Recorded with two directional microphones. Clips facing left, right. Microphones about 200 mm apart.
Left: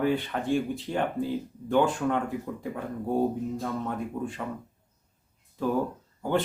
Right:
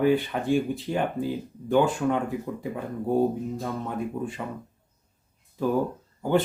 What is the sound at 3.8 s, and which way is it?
Speech, 5° right (ahead or behind).